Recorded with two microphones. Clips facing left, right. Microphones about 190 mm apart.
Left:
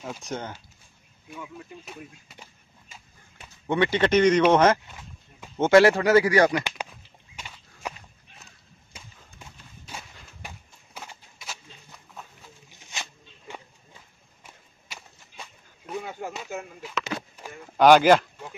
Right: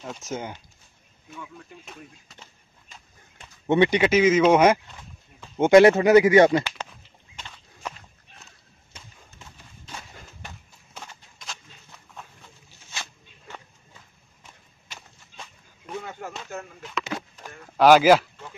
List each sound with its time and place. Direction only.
0.0 s speech: centre (ahead or behind)
1.3 s speech: 10° left (ahead or behind)
3.6 s speech: 20° right (ahead or behind)
4.0 s speech: 5° right (ahead or behind); by 6.6 s 25° right (ahead or behind)
7.3 s walk: 10° left (ahead or behind)
8.9 s a sound: 10° left (ahead or behind)
12.6 s a sound: 15° left (ahead or behind)
14.4 s whip: 5° left (ahead or behind)
15.9 s a sound: 10° left (ahead or behind)
17.8 s speech: 5° right (ahead or behind)